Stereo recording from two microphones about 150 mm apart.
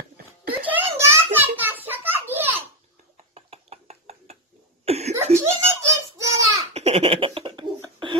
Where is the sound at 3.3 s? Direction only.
45° right (ahead or behind).